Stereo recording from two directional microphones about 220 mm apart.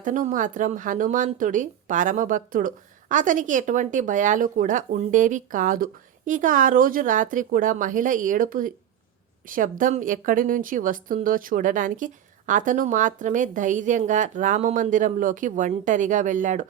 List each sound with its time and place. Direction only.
0.0 s speech: 35° right (ahead or behind)